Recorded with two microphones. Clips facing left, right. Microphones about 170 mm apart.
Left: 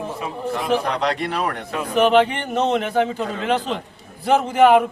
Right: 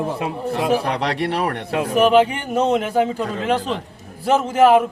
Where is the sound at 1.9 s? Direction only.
5° right (ahead or behind).